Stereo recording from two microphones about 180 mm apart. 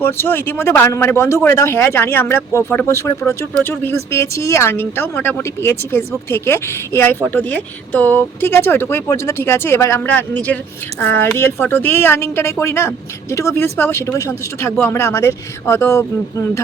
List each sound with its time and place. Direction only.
0.0 s speech: 10° left (ahead or behind)